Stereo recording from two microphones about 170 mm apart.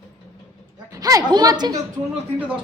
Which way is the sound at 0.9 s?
20° right (ahead or behind).